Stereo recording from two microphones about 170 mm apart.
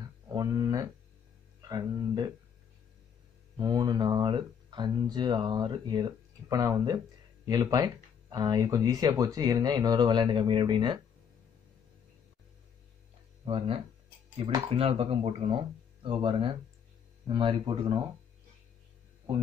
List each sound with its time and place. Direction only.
0.3 s a sound: 20° right (ahead or behind)
1.6 s speech: 25° right (ahead or behind)
3.5 s speech: 25° right (ahead or behind)
13.5 s speech: 35° right (ahead or behind)
14.8 s speech: 35° right (ahead or behind)